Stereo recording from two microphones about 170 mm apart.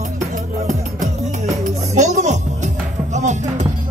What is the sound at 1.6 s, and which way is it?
Music, 45° right (ahead or behind).